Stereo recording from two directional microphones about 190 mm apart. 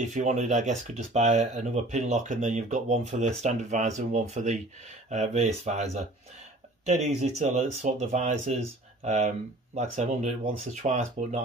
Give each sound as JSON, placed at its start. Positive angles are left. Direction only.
{"t": 0.0, "sound": "speech", "side_deg": -40}